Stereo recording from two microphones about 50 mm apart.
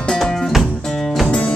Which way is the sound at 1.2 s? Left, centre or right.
Left.